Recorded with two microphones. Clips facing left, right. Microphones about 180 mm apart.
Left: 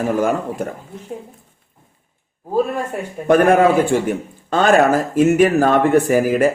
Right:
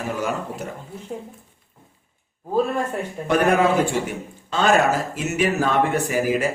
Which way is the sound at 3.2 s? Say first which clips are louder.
Left 6 dB; 50° left (ahead or behind).